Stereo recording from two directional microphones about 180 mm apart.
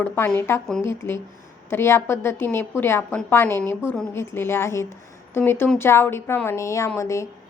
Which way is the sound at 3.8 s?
5° right (ahead or behind).